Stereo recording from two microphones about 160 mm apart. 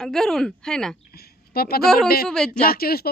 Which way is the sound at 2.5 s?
70° left (ahead or behind).